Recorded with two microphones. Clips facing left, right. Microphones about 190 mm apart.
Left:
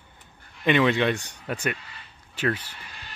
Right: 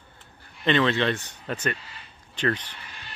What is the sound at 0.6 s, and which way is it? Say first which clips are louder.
Speech: left 1 dB; 10° left (ahead or behind).